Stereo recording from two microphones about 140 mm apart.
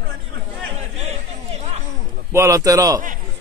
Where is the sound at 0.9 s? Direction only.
50° right (ahead or behind).